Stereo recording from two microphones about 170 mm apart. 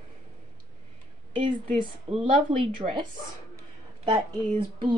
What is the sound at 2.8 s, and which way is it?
Speech, 25° right (ahead or behind).